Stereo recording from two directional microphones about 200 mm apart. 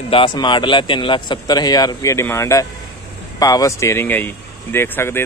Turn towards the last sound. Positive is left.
turn(degrees=10)  # may be behind; listen again after turning